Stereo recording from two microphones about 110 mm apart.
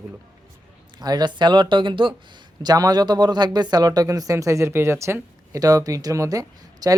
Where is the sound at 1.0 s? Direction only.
40° right (ahead or behind).